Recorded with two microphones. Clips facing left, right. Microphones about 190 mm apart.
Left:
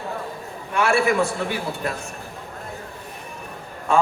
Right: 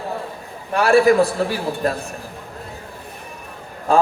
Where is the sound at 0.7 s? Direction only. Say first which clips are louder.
Right 6 dB; 35° right (ahead or behind).